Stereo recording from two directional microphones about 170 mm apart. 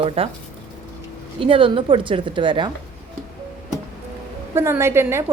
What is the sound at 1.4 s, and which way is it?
A woman's voice, 30° right (ahead or behind).